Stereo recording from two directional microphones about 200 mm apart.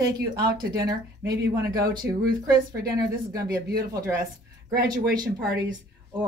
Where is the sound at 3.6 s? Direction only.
50° right (ahead or behind).